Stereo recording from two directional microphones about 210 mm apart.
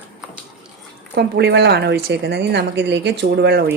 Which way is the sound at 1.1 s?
55° right (ahead or behind).